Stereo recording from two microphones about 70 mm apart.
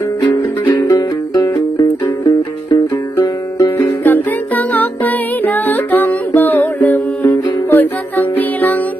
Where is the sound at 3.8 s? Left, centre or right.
Left.